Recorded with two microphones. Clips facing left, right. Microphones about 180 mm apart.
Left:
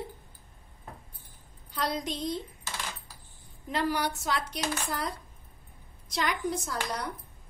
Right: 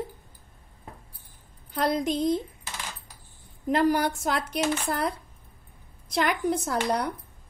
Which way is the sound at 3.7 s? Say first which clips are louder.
Right 7 dB; 50° right (ahead or behind).